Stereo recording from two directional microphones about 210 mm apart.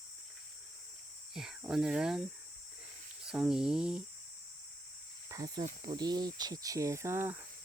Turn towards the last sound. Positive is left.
turn(degrees=-10)  # may be behind; listen again after turning